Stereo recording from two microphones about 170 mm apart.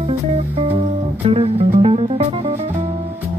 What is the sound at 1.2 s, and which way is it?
Music, 35° right (ahead or behind).